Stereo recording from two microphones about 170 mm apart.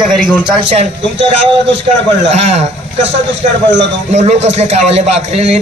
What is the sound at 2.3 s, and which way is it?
Speech, 40° right (ahead or behind).